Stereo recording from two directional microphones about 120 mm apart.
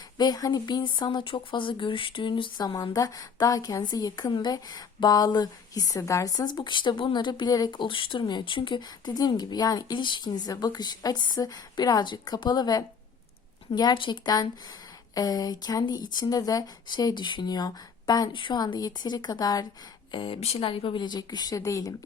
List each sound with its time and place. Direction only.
0.2 s speech: 35° left (ahead or behind)
20.1 s speech: 45° left (ahead or behind); by 21.9 s 25° left (ahead or behind)